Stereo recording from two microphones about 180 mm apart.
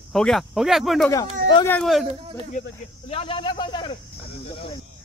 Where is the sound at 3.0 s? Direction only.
30° left (ahead or behind).